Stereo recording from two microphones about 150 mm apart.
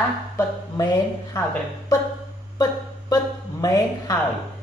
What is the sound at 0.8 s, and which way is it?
Speech, 30° left (ahead or behind).